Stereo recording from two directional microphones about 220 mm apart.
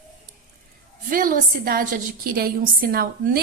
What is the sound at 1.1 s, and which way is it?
A woman's voice, 40° right (ahead or behind).